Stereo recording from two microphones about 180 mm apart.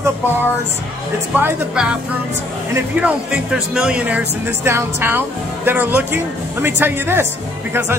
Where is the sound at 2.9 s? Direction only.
5° right (ahead or behind).